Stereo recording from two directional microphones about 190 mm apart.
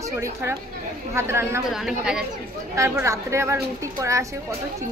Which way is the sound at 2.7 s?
15° right (ahead or behind).